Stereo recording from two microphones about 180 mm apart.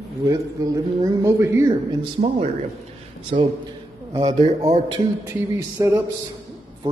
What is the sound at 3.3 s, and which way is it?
Speech, 40° right (ahead or behind).